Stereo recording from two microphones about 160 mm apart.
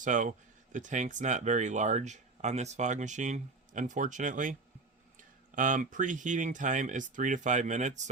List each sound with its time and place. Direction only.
0.0 s speech: 50° right (ahead or behind)